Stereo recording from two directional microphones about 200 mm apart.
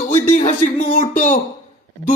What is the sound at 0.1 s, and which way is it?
A man's voice, 35° left (ahead or behind).